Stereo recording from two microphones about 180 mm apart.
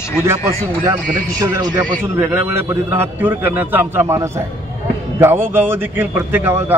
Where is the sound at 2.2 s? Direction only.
15° right (ahead or behind).